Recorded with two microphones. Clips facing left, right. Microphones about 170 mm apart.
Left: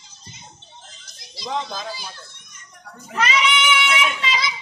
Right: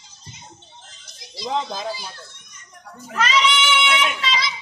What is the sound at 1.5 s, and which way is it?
Speech, 30° right (ahead or behind).